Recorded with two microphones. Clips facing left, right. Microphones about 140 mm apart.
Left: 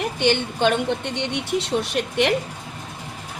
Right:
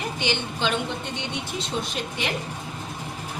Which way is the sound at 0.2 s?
55° left (ahead or behind).